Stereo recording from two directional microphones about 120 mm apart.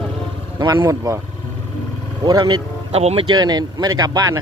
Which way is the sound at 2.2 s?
35° right (ahead or behind).